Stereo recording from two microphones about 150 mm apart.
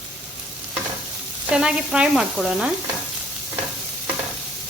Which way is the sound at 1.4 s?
5° right (ahead or behind).